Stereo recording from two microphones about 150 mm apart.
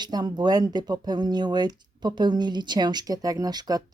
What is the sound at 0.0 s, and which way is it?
Speech, 30° right (ahead or behind).